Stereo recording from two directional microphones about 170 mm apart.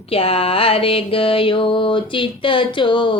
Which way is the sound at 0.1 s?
35° left (ahead or behind).